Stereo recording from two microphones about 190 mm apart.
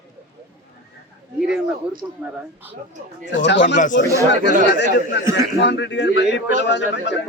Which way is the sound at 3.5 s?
65° left (ahead or behind).